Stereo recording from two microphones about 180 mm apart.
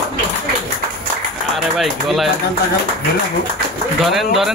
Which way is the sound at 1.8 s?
Centre (ahead or behind).